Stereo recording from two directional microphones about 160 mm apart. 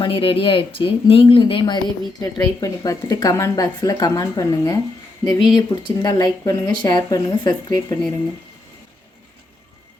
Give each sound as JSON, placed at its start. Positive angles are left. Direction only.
{"t": 0.0, "sound": "speech", "side_deg": 35}